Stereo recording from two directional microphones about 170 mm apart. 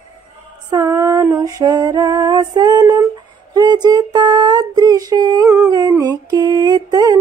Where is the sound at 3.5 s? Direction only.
25° right (ahead or behind).